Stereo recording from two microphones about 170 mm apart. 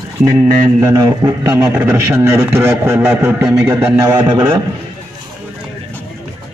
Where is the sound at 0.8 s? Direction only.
20° right (ahead or behind).